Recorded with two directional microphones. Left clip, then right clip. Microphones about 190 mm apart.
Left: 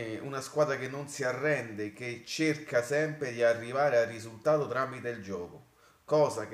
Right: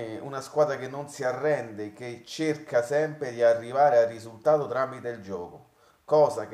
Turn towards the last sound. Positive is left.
turn(degrees=5)  # may be behind; listen again after turning